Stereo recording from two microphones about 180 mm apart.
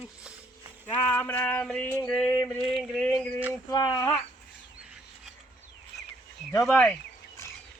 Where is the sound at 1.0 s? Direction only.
10° left (ahead or behind).